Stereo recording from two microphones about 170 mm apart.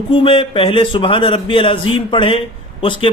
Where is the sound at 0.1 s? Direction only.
30° left (ahead or behind).